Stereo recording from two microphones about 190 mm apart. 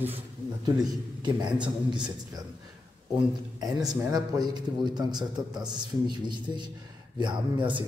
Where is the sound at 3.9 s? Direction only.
20° right (ahead or behind).